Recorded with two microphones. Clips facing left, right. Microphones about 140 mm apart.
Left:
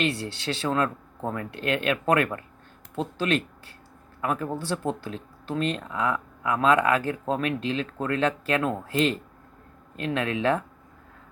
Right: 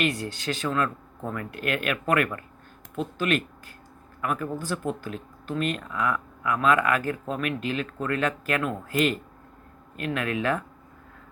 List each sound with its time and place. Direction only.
0.0 s speech: 30° left (ahead or behind)